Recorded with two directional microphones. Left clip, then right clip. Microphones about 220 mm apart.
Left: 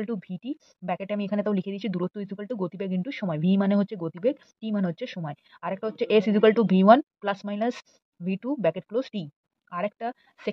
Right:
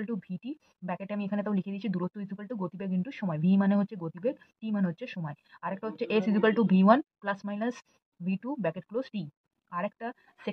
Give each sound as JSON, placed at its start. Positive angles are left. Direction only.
{"t": 0.0, "sound": "speech", "side_deg": 30}